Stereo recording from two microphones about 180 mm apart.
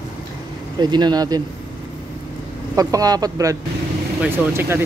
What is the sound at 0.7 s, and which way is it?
Speech, 25° right (ahead or behind).